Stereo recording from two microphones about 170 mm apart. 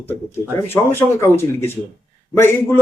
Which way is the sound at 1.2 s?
15° left (ahead or behind).